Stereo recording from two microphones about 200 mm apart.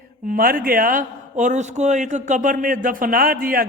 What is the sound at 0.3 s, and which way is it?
A man's voice, 45° right (ahead or behind).